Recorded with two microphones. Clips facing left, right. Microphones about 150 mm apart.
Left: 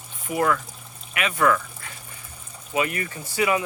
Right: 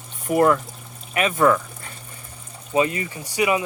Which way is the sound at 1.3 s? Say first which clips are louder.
Right 3 dB; 25° right (ahead or behind).